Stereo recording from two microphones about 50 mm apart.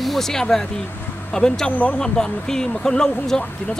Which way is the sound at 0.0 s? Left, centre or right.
Centre.